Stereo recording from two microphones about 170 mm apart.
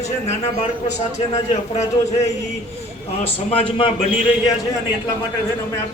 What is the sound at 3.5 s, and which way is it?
Speech, 35° left (ahead or behind).